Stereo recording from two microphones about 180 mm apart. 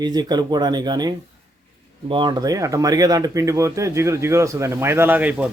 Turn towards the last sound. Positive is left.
turn(degrees=-10)  # may be behind; listen again after turning